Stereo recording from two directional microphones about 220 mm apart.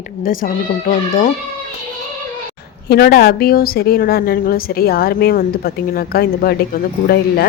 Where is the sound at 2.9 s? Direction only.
45° left (ahead or behind).